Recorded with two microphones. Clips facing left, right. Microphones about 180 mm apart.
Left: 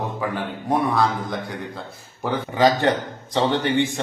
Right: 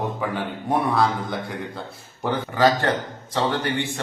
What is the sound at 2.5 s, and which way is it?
Speech, 20° left (ahead or behind).